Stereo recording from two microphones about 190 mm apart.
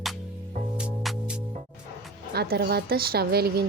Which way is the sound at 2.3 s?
55° right (ahead or behind).